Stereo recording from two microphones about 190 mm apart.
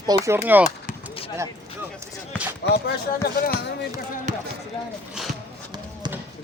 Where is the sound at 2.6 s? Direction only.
60° left (ahead or behind).